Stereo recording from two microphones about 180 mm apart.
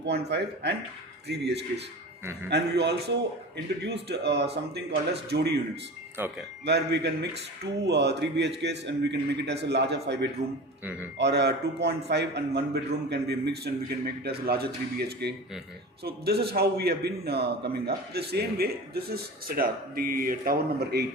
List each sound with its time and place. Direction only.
0.0 s a man's voice: 70° right (ahead or behind)
6.7 s a man's voice: 70° right (ahead or behind)